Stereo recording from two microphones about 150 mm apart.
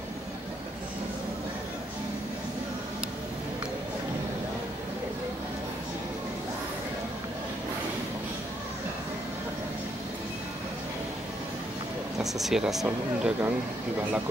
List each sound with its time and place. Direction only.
12.2 s speech: centre (ahead or behind)
12.8 s speech: 10° right (ahead or behind)